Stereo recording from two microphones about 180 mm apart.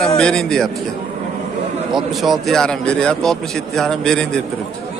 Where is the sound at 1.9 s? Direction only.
Centre (ahead or behind).